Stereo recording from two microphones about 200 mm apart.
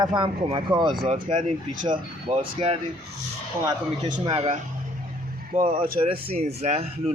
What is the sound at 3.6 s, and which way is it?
Speech, 20° right (ahead or behind).